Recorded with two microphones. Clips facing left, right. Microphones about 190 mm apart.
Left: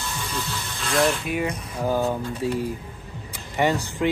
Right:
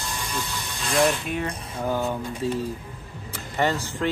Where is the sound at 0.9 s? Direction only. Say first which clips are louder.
Even; 10° left (ahead or behind).